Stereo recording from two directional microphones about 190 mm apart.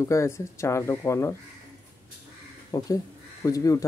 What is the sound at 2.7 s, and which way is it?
Speech, 20° left (ahead or behind).